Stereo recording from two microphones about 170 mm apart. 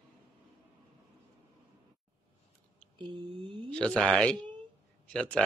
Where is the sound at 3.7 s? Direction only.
5° left (ahead or behind).